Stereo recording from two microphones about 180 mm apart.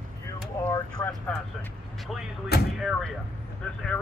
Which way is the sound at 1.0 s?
10° left (ahead or behind).